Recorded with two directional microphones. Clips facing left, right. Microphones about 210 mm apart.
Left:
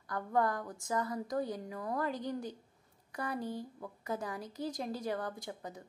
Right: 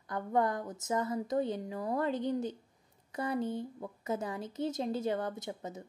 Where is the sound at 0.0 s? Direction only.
20° right (ahead or behind).